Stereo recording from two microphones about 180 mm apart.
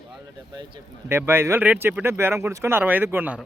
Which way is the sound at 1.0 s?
10° right (ahead or behind).